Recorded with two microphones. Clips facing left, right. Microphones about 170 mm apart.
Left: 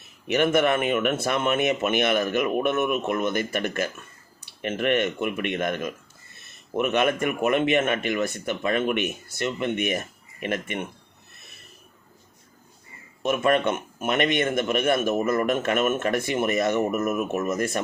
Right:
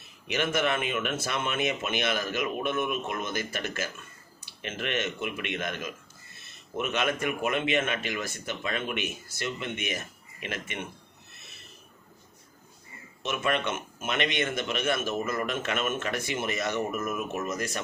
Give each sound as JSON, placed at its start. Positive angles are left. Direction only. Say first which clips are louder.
{"t": 0.3, "sound": "a man's voice", "louder": "left 7 dB", "side_deg": 55}
{"t": 13.2, "sound": "a man's voice", "louder": "left 7 dB", "side_deg": 50}